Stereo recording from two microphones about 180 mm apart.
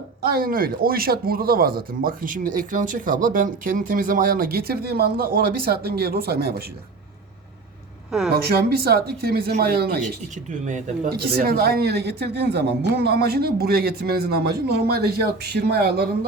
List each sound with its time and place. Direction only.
0.2 s speech: 55° right (ahead or behind)
8.3 s speech: 60° right (ahead or behind)
10.7 s speech: 45° right (ahead or behind)
11.1 s speech: 60° right (ahead or behind)